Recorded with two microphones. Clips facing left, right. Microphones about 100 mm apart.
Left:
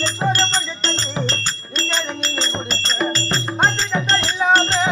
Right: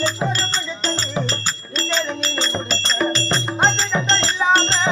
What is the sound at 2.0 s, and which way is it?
Music, 5° left (ahead or behind).